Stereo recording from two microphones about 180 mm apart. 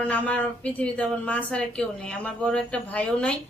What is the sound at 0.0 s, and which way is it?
Speech, 10° left (ahead or behind).